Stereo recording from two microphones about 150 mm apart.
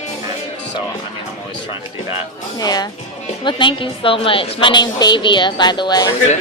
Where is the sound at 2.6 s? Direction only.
25° left (ahead or behind).